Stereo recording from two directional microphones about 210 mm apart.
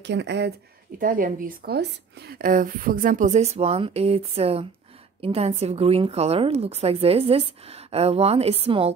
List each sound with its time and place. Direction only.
0.0 s speech: 55° right (ahead or behind)
0.9 s a woman's voice: 40° right (ahead or behind)